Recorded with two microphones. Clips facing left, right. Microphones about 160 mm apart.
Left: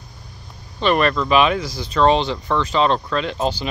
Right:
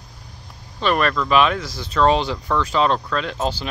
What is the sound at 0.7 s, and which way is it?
Speech, centre (ahead or behind).